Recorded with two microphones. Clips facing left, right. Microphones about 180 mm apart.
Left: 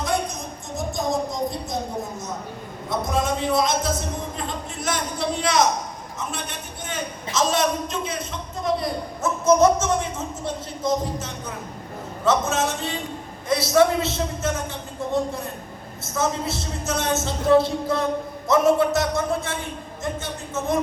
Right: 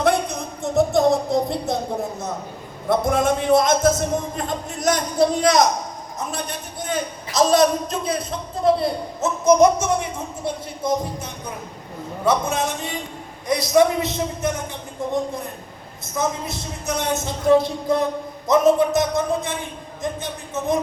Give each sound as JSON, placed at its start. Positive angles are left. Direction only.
{"t": 0.0, "sound": "a sound", "side_deg": -65}
{"t": 3.0, "sound": "a man's voice", "side_deg": -55}
{"t": 9.2, "sound": "speech", "side_deg": -15}
{"t": 16.1, "sound": "speech", "side_deg": -15}